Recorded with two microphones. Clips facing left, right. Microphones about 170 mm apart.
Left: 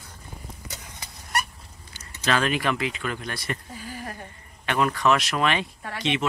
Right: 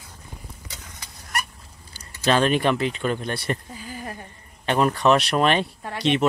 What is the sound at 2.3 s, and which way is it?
Speech, 30° right (ahead or behind).